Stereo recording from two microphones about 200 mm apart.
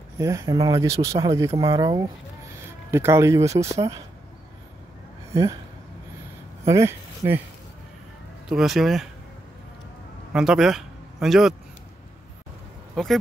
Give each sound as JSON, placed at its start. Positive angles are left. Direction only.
{"t": 0.2, "sound": "speech", "side_deg": -15}
{"t": 5.3, "sound": "speech", "side_deg": -15}
{"t": 6.6, "sound": "speech", "side_deg": -15}
{"t": 8.5, "sound": "speech", "side_deg": 0}
{"t": 10.3, "sound": "speech", "side_deg": -5}
{"t": 12.9, "sound": "speech", "side_deg": 0}